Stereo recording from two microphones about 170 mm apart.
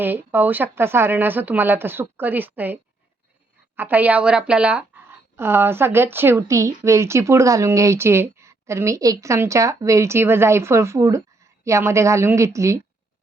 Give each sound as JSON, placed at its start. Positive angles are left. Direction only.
{"t": 0.0, "sound": "speech", "side_deg": -10}